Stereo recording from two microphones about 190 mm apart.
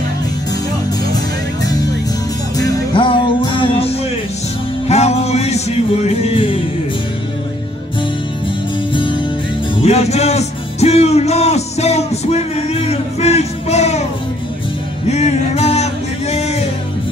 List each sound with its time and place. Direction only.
1.1 s music: 20° left (ahead or behind)
9.8 s music: 35° left (ahead or behind)
15.0 s a sound: 35° left (ahead or behind)